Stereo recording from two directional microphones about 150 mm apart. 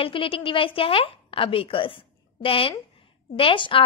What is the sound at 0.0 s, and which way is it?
Speech, 35° left (ahead or behind).